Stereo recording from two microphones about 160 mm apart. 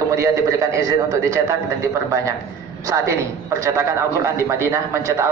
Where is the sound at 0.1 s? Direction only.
20° right (ahead or behind).